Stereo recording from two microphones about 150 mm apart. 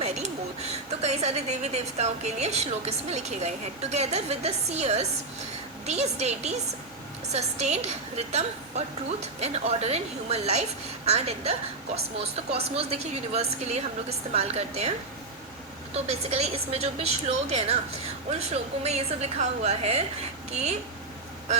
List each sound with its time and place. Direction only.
0.0 s a woman's voice: 45° right (ahead or behind)
12.5 s a woman's voice: 45° right (ahead or behind)
16.0 s a woman's voice: 45° right (ahead or behind)